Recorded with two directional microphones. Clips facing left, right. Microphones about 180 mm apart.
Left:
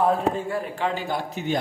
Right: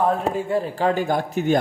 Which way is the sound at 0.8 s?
45° right (ahead or behind).